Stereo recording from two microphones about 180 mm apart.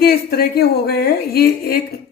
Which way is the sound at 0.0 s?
60° left (ahead or behind).